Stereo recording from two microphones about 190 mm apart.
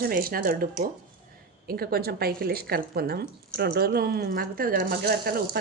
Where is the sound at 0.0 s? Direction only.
50° right (ahead or behind).